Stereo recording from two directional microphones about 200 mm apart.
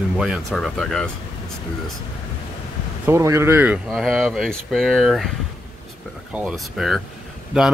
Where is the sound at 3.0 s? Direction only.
15° right (ahead or behind).